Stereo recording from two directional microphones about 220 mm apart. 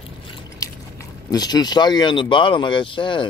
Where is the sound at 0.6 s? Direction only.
15° left (ahead or behind).